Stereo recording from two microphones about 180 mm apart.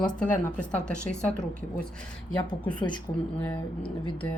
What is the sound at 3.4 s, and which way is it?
Speech, 10° left (ahead or behind).